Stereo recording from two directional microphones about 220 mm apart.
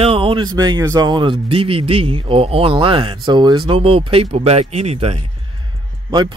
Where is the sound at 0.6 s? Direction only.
15° right (ahead or behind).